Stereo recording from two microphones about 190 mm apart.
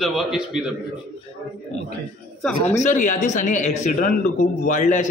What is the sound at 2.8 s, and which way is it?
Speech, 40° left (ahead or behind).